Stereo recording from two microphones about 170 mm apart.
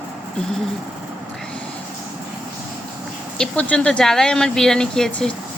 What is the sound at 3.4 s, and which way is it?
Speech, 5° left (ahead or behind).